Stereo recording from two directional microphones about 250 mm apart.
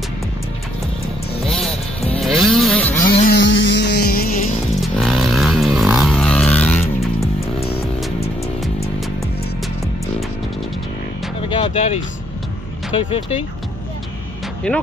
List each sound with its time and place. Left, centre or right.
1.4 s music: centre
2.2 s a sound: centre
3.3 s music: left
4.8 s a sound: centre
11.4 s music: centre
12.9 s speech: left
14.7 s speech: centre